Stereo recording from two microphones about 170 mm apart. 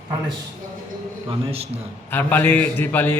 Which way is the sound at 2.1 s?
10° left (ahead or behind).